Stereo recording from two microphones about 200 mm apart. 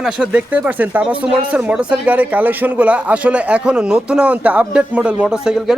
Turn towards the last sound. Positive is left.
turn(degrees=-5)  # may be behind; listen again after turning